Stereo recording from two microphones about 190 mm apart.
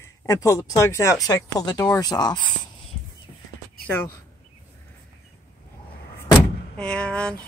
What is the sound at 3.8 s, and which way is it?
Speech, 10° left (ahead or behind).